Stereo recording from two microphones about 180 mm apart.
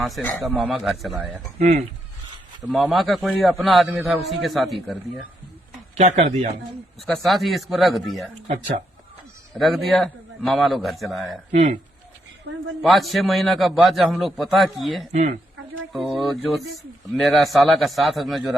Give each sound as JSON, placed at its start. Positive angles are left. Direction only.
{"t": 0.0, "sound": "a man's voice", "side_deg": 0}
{"t": 1.5, "sound": "speech", "side_deg": -40}
{"t": 2.6, "sound": "a man's voice", "side_deg": 0}
{"t": 5.9, "sound": "speech", "side_deg": -40}
{"t": 7.0, "sound": "a man's voice", "side_deg": 0}
{"t": 8.4, "sound": "speech", "side_deg": -40}
{"t": 9.6, "sound": "a man's voice", "side_deg": 0}
{"t": 11.5, "sound": "speech", "side_deg": -40}
{"t": 12.8, "sound": "a man's voice", "side_deg": 0}
{"t": 15.1, "sound": "speech", "side_deg": -40}
{"t": 15.9, "sound": "a man's voice", "side_deg": 0}